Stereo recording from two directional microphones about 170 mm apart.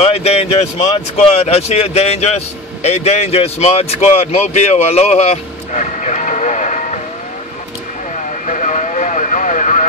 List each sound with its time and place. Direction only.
0.0 s speech: 35° left (ahead or behind)
8.5 s vehicle: 45° left (ahead or behind)